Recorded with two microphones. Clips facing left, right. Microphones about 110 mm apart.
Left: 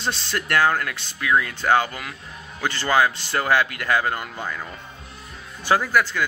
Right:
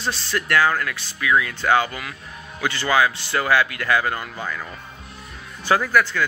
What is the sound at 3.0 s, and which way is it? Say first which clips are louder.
Speech: left 1 dB; 30° left (ahead or behind).